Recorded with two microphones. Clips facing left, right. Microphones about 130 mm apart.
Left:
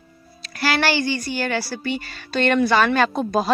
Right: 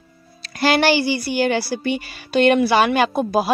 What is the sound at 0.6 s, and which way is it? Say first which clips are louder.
Speech: right 4 dB; 20° right (ahead or behind).